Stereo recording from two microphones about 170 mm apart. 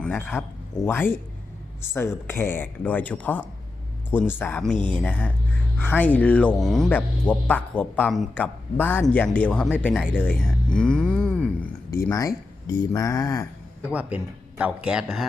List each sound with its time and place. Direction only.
0.0 s speech: 10° left (ahead or behind)
10.2 s a sound: 10° left (ahead or behind)
11.9 s speech: 15° left (ahead or behind)
13.9 s speech: 10° right (ahead or behind)